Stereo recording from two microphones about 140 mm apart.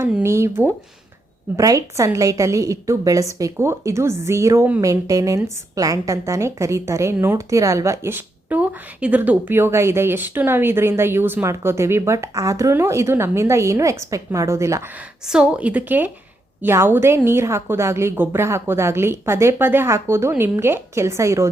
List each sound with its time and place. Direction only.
0.2 s a woman's voice: 20° right (ahead or behind)
15.3 s a woman's voice: 5° right (ahead or behind)